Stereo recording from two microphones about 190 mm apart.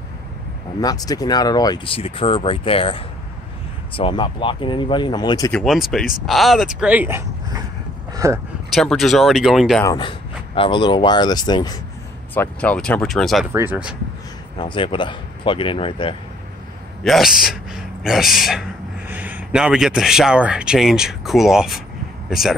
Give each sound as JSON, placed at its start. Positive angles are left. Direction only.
{"t": 0.7, "sound": "speech", "side_deg": 20}
{"t": 5.5, "sound": "speech", "side_deg": 0}
{"t": 8.1, "sound": "a sound", "side_deg": -15}
{"t": 8.6, "sound": "speech", "side_deg": 0}
{"t": 9.9, "sound": "speech", "side_deg": 25}
{"t": 12.4, "sound": "speech", "side_deg": 5}
{"t": 13.5, "sound": "speech", "side_deg": -10}
{"t": 14.6, "sound": "speech", "side_deg": 25}
{"t": 17.0, "sound": "a man's voice", "side_deg": 0}